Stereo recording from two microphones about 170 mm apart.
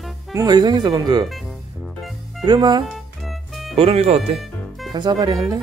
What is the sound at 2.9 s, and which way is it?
Music, centre (ahead or behind).